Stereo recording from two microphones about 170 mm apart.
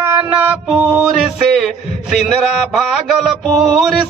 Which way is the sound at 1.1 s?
Centre (ahead or behind).